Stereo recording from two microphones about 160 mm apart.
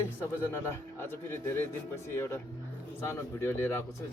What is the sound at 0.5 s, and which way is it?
Speech, 15° left (ahead or behind).